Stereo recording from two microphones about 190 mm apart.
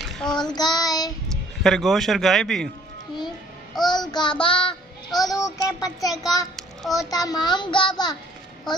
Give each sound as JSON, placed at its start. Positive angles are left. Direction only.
{"t": 0.0, "sound": "child singing", "side_deg": 0}
{"t": 0.4, "sound": "child singing", "side_deg": 20}
{"t": 1.6, "sound": "a man's voice", "side_deg": 0}
{"t": 3.8, "sound": "child singing", "side_deg": 20}
{"t": 6.0, "sound": "a child's voice", "side_deg": 20}
{"t": 6.8, "sound": "a child's voice", "side_deg": 0}
{"t": 7.1, "sound": "a child's voice", "side_deg": 20}